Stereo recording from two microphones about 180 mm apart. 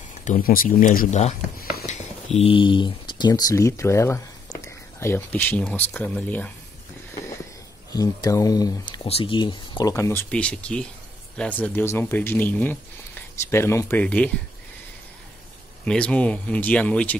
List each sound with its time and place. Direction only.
0.2 s speech: 50° left (ahead or behind)
1.6 s a sound: 55° left (ahead or behind)
2.3 s speech: 30° left (ahead or behind); by 6.5 s 10° left (ahead or behind)
7.9 s speech: 20° left (ahead or behind)
15.8 s speech: 5° left (ahead or behind)